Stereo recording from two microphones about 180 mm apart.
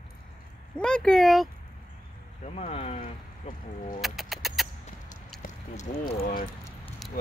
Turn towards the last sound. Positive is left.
turn(degrees=50)  # may be behind; listen again after turning